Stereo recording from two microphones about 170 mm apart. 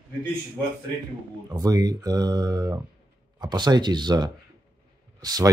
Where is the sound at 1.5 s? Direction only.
20° right (ahead or behind).